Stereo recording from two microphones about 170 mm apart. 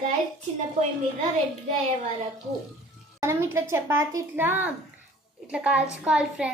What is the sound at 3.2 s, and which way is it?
A woman's voice, 15° right (ahead or behind).